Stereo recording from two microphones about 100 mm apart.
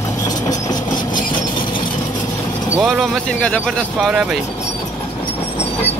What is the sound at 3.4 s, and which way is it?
Speech, 15° left (ahead or behind).